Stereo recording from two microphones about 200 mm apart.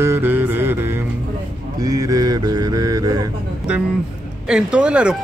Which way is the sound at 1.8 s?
20° right (ahead or behind).